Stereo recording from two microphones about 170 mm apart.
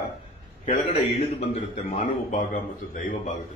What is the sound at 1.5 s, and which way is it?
A man's voice, 40° left (ahead or behind).